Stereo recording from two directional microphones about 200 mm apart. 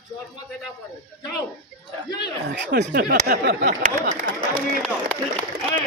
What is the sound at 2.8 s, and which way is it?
Speech, 45° right (ahead or behind).